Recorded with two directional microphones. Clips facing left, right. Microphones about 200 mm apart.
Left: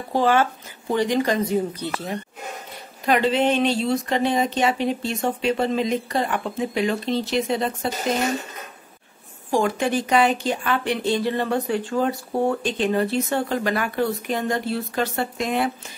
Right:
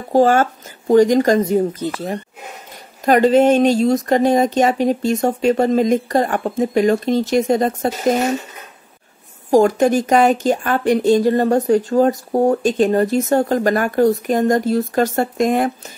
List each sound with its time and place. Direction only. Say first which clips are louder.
0.1 s a woman's voice: right 6 dB; 45° right (ahead or behind)
9.5 s a woman's voice: right 8 dB; 40° right (ahead or behind)